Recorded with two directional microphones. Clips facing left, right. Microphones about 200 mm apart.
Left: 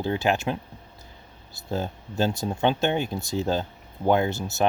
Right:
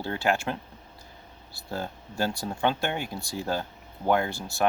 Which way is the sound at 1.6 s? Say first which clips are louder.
Left 5 dB; 20° left (ahead or behind).